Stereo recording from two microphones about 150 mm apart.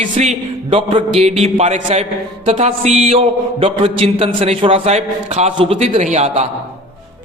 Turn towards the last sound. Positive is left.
turn(degrees=-45)  # may be behind; listen again after turning